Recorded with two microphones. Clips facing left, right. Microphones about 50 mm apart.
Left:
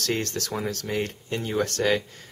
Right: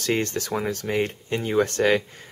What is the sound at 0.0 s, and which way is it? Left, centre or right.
Speech, right.